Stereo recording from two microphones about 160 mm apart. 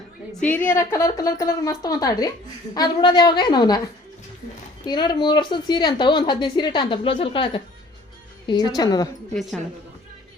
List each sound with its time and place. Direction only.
0.4 s a woman's voice: 10° left (ahead or behind)
4.9 s a woman's voice: 25° left (ahead or behind)
9.3 s a woman's voice: centre (ahead or behind)